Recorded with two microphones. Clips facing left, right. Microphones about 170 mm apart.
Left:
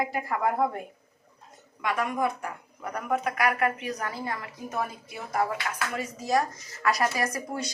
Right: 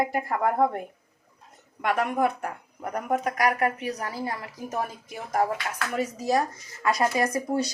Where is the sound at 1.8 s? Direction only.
60° right (ahead or behind).